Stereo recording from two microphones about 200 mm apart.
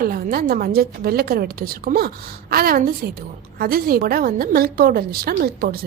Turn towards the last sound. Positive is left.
turn(degrees=-50)  # may be behind; listen again after turning